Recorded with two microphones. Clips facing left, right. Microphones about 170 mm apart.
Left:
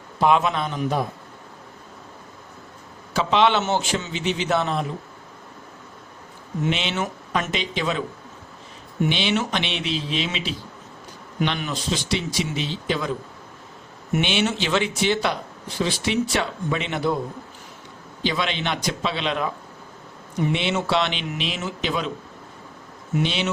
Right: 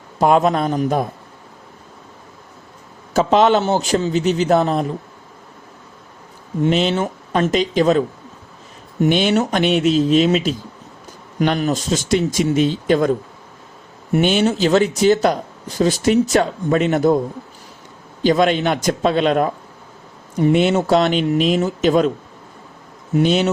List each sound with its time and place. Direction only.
0.2 s speech: 40° right (ahead or behind)
3.1 s speech: 45° right (ahead or behind)
6.7 s speech: 40° right (ahead or behind)
14.1 s speech: 40° right (ahead or behind)
18.2 s speech: 45° right (ahead or behind)
23.1 s speech: 45° right (ahead or behind)